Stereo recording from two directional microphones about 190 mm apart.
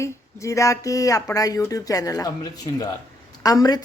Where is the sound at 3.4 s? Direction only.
20° left (ahead or behind).